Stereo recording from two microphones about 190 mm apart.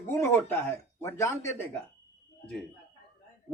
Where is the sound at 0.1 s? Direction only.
15° left (ahead or behind).